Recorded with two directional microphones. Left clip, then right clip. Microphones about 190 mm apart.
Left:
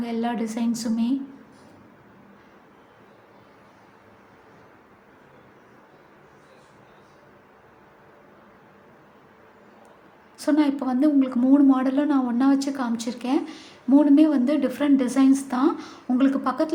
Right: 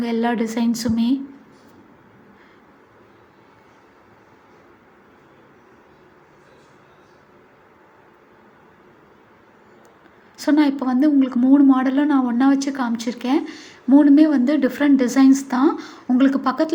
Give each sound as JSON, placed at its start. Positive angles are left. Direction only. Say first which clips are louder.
{"t": 0.0, "sound": "a woman's voice", "louder": "right 6 dB", "side_deg": -25}
{"t": 10.3, "sound": "a woman's voice", "louder": "right 4 dB", "side_deg": -20}